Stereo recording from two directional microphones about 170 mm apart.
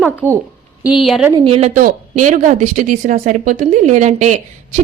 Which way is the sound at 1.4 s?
35° right (ahead or behind).